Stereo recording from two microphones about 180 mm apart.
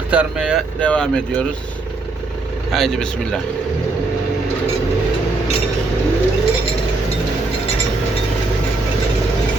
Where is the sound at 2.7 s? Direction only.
Centre (ahead or behind).